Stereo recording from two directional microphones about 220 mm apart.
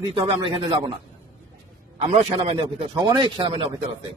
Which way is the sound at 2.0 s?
25° right (ahead or behind).